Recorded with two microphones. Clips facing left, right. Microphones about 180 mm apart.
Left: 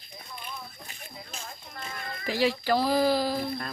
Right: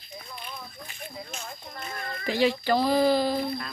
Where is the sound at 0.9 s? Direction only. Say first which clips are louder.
Right 5 dB; 35° left (ahead or behind).